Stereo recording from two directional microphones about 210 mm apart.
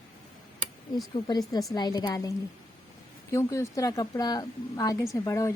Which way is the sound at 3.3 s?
15° left (ahead or behind).